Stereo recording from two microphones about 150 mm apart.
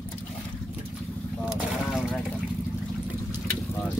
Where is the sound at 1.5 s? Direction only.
5° right (ahead or behind).